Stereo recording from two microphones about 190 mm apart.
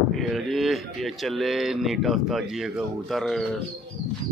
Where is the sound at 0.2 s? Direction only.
Centre (ahead or behind).